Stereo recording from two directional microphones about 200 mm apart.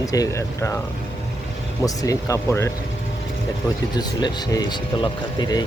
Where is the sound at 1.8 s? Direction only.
15° left (ahead or behind).